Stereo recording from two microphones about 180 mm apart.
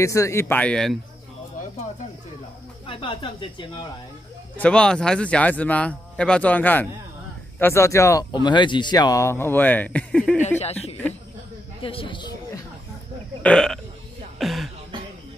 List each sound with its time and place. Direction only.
0.0 s speech: 15° left (ahead or behind)
2.9 s speech: 30° left (ahead or behind)
4.6 s speech: 5° left (ahead or behind)
10.6 s a woman's voice: 35° left (ahead or behind)
13.4 s speech: 5° left (ahead or behind)
14.4 s music: centre (ahead or behind)